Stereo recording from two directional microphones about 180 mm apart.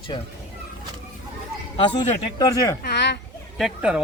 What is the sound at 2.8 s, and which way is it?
Speech, 70° left (ahead or behind).